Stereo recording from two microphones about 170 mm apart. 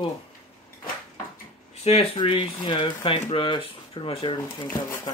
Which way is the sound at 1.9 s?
35° left (ahead or behind).